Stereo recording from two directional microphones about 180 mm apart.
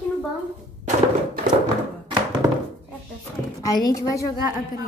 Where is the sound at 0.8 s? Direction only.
50° right (ahead or behind).